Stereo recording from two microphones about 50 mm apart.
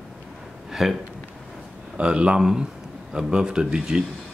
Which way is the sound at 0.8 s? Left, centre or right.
Centre.